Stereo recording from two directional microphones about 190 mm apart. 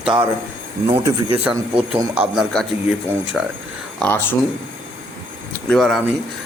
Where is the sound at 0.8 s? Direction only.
25° right (ahead or behind).